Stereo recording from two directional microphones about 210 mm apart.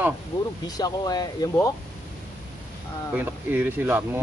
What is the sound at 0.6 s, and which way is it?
Speech, 20° left (ahead or behind).